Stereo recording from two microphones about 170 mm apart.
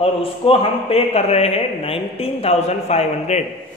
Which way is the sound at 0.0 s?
35° left (ahead or behind).